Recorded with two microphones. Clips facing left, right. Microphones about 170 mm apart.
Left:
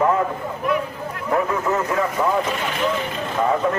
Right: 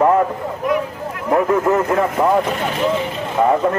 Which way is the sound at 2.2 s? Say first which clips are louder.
Right 5 dB; 20° right (ahead or behind).